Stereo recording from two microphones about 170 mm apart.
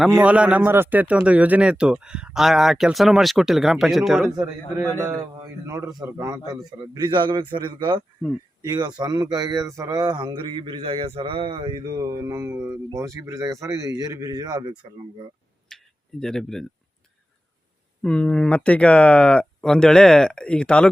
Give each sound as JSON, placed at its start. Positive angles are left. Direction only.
{"t": 0.2, "sound": "speech", "side_deg": -5}
{"t": 4.4, "sound": "a man's voice", "side_deg": -15}
{"t": 15.7, "sound": "tick-tock", "side_deg": 5}
{"t": 16.2, "sound": "speech", "side_deg": 5}
{"t": 18.0, "sound": "speech", "side_deg": 5}